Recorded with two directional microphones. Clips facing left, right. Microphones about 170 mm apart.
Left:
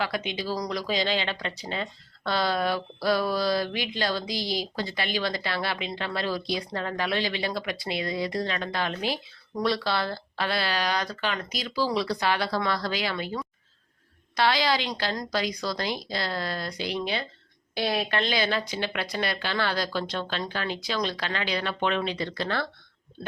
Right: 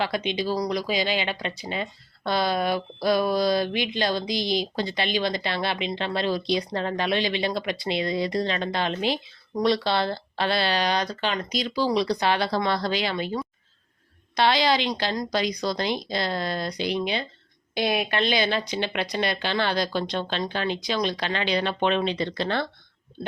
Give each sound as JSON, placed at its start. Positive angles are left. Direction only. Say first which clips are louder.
{"t": 0.0, "sound": "speech", "louder": "right 4 dB", "side_deg": -25}